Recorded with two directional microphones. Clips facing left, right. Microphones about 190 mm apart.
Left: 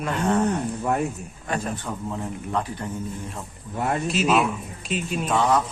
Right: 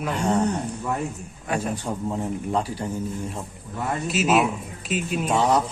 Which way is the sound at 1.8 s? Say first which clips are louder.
Right 3 dB; 30° right (ahead or behind).